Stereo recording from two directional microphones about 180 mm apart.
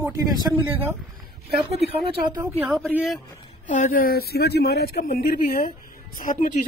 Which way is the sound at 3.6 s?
45° left (ahead or behind).